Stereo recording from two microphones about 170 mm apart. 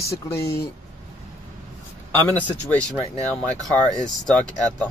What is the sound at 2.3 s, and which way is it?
Speech, 5° left (ahead or behind).